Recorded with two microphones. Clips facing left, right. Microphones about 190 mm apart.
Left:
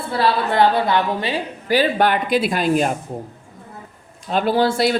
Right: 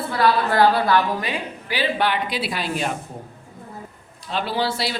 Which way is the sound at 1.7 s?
45° left (ahead or behind).